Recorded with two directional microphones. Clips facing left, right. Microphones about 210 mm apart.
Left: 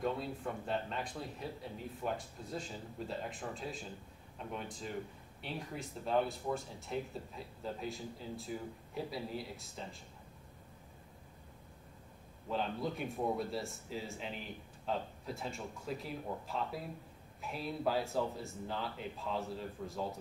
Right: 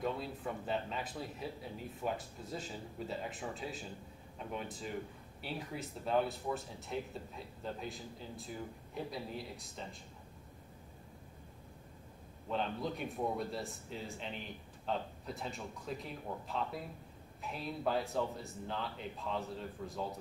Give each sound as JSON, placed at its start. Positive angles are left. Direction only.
{"t": 0.0, "sound": "speech", "side_deg": 0}
{"t": 12.4, "sound": "speech", "side_deg": 0}